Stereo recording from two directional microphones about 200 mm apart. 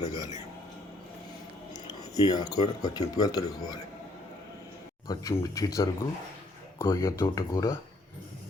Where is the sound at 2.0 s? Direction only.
20° left (ahead or behind).